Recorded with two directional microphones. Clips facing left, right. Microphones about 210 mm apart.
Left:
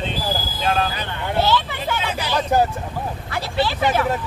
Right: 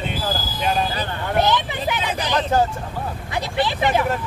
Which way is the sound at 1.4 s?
15° right (ahead or behind).